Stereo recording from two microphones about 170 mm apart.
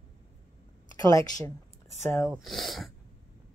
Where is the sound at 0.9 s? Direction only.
20° left (ahead or behind).